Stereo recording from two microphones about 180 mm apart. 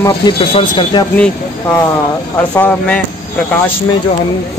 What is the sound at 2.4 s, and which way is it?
Speech, 10° left (ahead or behind).